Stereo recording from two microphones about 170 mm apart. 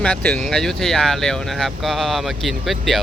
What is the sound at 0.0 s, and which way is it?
Speech, 5° left (ahead or behind).